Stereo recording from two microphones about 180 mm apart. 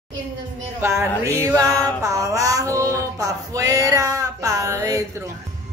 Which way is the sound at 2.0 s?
15° right (ahead or behind).